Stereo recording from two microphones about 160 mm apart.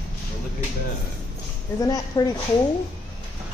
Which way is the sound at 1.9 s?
25° left (ahead or behind).